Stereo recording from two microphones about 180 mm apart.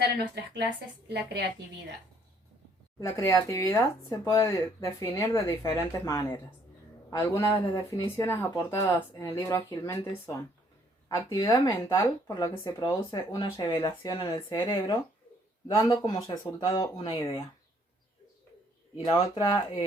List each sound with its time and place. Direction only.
0.0 s a woman's voice: 70° right (ahead or behind)
3.0 s speech: 15° left (ahead or behind)
11.1 s speech: 15° left (ahead or behind)
19.3 s speech: 25° left (ahead or behind)